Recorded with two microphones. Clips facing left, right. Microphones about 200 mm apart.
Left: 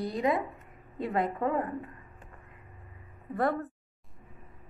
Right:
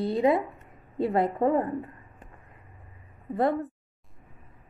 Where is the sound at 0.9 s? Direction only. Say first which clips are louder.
Right 5 dB; 30° right (ahead or behind).